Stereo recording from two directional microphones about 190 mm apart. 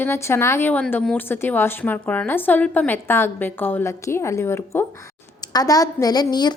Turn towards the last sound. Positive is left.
turn(degrees=20)  # may be behind; listen again after turning